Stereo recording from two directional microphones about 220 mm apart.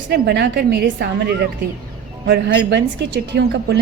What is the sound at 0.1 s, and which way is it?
A woman's voice, 50° right (ahead or behind).